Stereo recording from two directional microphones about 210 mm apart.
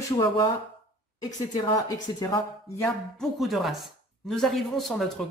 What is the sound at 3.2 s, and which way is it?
Speech, centre (ahead or behind).